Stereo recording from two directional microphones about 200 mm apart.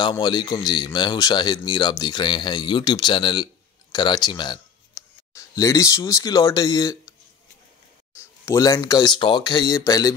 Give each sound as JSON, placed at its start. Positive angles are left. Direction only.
{"t": 0.0, "sound": "speech", "side_deg": 20}
{"t": 8.2, "sound": "speech", "side_deg": 15}